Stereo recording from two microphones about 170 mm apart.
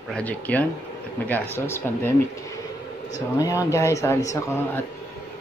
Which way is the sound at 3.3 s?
20° left (ahead or behind).